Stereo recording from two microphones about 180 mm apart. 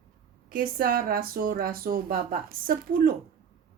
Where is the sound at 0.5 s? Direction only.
55° right (ahead or behind).